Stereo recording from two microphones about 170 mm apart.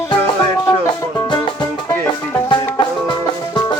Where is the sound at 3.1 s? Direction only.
25° left (ahead or behind).